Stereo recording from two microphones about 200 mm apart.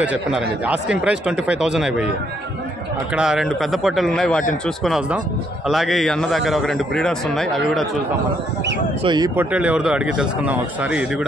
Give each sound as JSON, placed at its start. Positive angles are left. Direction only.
{"t": 0.0, "sound": "a man's voice", "side_deg": -5}
{"t": 3.2, "sound": "a man's voice", "side_deg": -5}
{"t": 9.0, "sound": "speech", "side_deg": -20}
{"t": 9.3, "sound": "a man's voice", "side_deg": -10}